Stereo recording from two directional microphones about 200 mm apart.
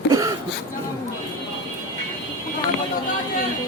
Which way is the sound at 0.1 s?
15° right (ahead or behind).